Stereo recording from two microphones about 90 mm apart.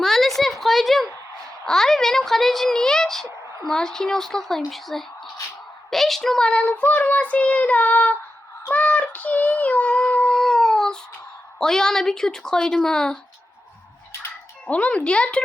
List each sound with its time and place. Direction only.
0.0 s a sound: 5° left (ahead or behind)
1.6 s speech: 5° left (ahead or behind)
5.9 s female singing: 5° left (ahead or behind)
11.6 s speech: 5° left (ahead or behind)
14.7 s female singing: 15° left (ahead or behind)